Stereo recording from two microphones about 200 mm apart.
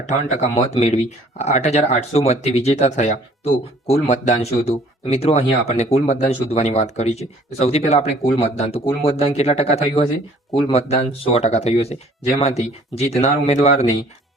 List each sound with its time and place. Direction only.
0.0 s speech: 35° left (ahead or behind)